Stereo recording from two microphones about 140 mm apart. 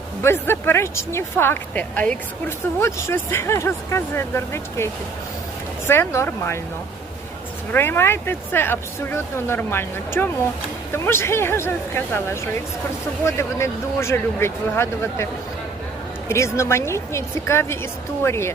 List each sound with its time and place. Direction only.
0.2 s speech: 15° left (ahead or behind)
5.9 s speech: 15° left (ahead or behind)
7.7 s speech: 15° left (ahead or behind)
16.3 s speech: 20° left (ahead or behind)